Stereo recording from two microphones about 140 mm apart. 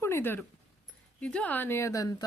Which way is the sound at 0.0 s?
15° left (ahead or behind).